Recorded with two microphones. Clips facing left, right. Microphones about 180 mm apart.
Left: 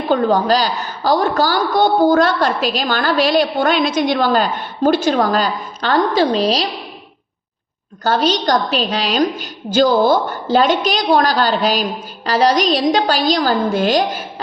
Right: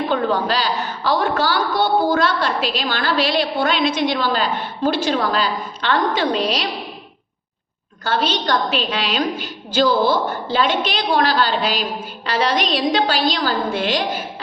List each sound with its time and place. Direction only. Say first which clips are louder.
0.1 s a woman's voice: left 9 dB; 40° left (ahead or behind)
8.0 s a woman's voice: left 5 dB; 40° left (ahead or behind)